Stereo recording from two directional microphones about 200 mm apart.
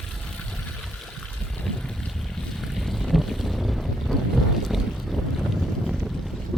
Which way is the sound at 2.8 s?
Centre (ahead or behind).